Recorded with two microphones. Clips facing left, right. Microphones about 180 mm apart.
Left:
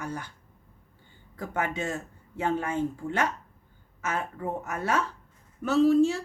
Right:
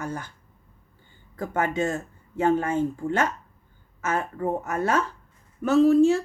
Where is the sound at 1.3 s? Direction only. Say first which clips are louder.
Right 5 dB; 45° right (ahead or behind).